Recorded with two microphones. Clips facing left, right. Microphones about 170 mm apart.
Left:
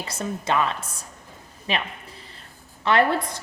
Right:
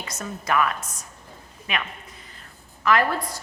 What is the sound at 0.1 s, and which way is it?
A woman's voice, 30° left (ahead or behind).